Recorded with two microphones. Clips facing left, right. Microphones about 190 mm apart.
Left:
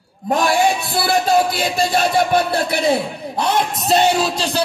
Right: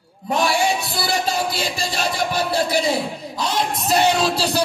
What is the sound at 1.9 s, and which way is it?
A man's voice, 60° left (ahead or behind).